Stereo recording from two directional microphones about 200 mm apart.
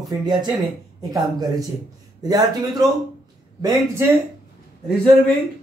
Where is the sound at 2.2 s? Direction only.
20° right (ahead or behind).